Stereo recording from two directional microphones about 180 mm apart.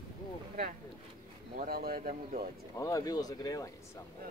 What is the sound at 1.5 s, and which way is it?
Speech, 55° right (ahead or behind).